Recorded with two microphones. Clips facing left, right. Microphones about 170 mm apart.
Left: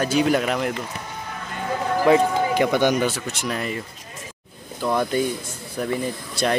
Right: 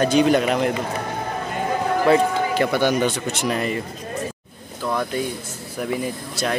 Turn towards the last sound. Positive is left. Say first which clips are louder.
# left 2 dB
turn(degrees=0)  # may be behind; listen again after turning